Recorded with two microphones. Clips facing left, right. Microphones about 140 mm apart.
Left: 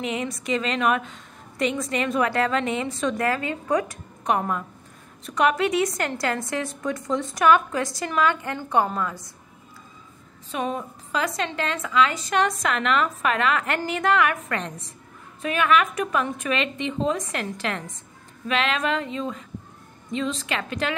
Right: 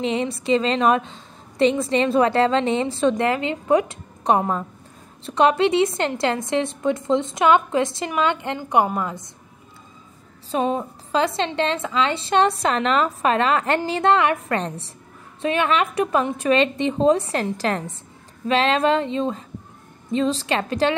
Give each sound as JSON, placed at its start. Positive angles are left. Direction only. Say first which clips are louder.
{"t": 0.0, "sound": "a woman's voice", "louder": "right 5 dB", "side_deg": -30}
{"t": 10.5, "sound": "a woman's voice", "louder": "right 6 dB", "side_deg": -30}